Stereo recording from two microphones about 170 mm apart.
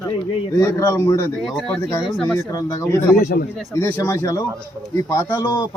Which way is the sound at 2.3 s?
20° left (ahead or behind).